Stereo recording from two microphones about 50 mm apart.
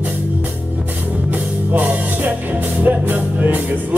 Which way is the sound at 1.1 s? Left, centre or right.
Right.